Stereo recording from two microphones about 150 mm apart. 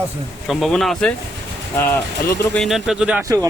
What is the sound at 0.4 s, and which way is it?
Speech, centre (ahead or behind).